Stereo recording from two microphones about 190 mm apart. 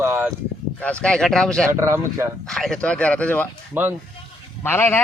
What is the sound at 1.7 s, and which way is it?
Speech, 15° right (ahead or behind).